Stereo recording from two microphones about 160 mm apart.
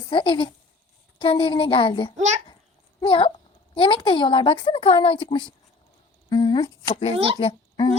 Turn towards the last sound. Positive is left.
turn(degrees=30)  # may be behind; listen again after turning